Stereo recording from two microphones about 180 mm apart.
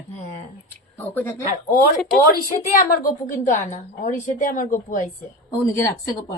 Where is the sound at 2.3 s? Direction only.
50° left (ahead or behind).